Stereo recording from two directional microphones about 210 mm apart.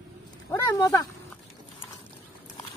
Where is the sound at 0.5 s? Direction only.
15° left (ahead or behind).